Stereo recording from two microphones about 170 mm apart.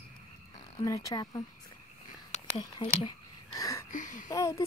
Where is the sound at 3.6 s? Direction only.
20° left (ahead or behind).